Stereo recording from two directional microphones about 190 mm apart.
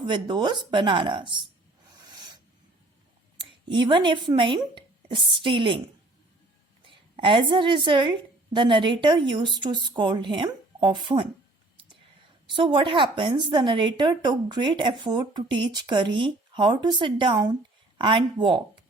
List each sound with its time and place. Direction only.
0.0 s a woman's voice: 25° right (ahead or behind)
2.0 s a sound: 20° right (ahead or behind)
3.3 s speech: 25° right (ahead or behind)
6.8 s a woman's voice: 25° right (ahead or behind)
12.5 s a woman's voice: 25° right (ahead or behind)